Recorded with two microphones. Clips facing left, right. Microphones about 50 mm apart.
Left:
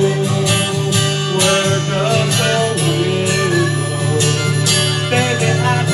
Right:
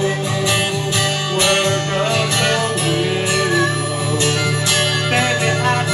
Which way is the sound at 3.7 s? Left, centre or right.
Left.